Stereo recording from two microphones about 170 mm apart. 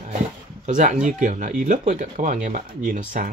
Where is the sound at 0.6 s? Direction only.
45° right (ahead or behind).